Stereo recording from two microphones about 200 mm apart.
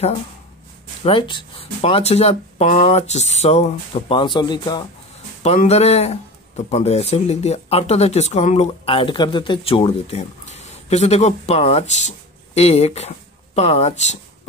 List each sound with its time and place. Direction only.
1.0 s speech: 25° left (ahead or behind)
5.4 s speech: 30° left (ahead or behind)